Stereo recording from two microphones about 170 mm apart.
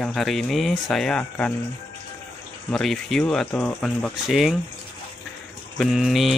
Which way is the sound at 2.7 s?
5° left (ahead or behind).